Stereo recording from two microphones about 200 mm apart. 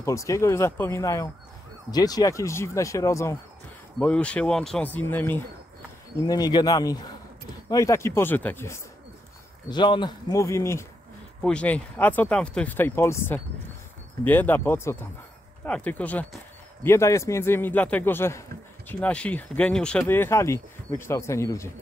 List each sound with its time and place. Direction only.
0.0 s speech: 15° left (ahead or behind)
6.2 s a man's voice: 20° left (ahead or behind)
9.7 s speech: 20° left (ahead or behind)